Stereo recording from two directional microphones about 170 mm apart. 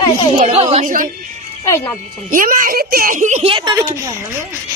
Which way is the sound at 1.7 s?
15° left (ahead or behind).